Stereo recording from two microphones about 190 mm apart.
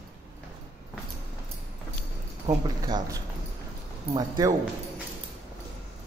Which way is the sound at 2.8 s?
20° right (ahead or behind).